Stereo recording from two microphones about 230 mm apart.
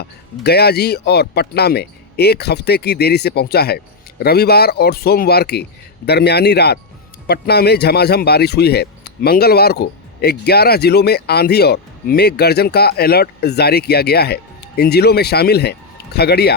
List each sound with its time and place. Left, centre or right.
0.0 s speech: left